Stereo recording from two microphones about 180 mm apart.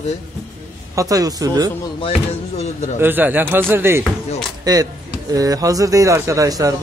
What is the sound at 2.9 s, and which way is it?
Speech, 10° right (ahead or behind).